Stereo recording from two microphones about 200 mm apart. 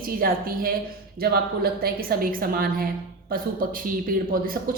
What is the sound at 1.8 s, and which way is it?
Speech, 45° right (ahead or behind).